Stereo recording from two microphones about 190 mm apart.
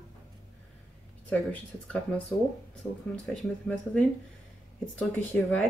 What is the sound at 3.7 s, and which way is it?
Speech, centre (ahead or behind).